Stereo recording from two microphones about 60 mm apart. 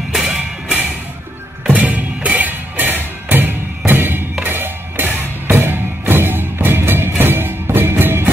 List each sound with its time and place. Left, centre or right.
0.1 s music: centre
1.7 s music: right